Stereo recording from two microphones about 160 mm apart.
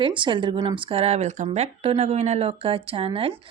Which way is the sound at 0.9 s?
40° right (ahead or behind).